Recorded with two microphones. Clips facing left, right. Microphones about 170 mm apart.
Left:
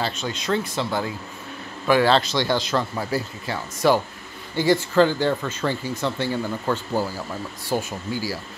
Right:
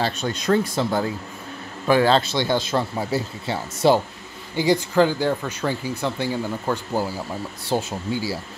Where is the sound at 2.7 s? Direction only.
25° right (ahead or behind).